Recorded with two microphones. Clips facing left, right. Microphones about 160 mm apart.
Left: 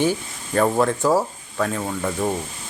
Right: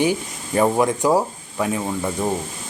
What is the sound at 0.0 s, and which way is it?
Speech, 15° right (ahead or behind).